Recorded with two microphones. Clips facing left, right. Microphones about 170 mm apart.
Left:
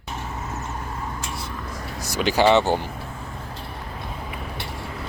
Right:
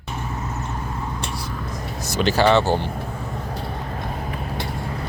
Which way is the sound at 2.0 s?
10° left (ahead or behind).